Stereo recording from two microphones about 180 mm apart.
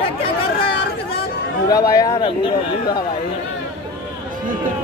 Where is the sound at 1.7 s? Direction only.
20° left (ahead or behind).